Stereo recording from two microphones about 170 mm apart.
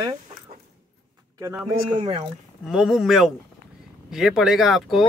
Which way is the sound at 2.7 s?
Centre (ahead or behind).